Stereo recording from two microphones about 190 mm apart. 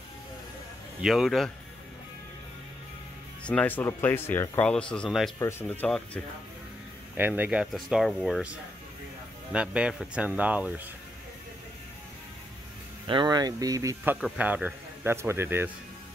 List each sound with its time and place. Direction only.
1.0 s speech: centre (ahead or behind)
3.4 s speech: 10° left (ahead or behind)
7.2 s speech: 10° right (ahead or behind)
9.5 s speech: 5° right (ahead or behind)
13.0 s speech: 25° right (ahead or behind)
14.2 s speech: 5° right (ahead or behind)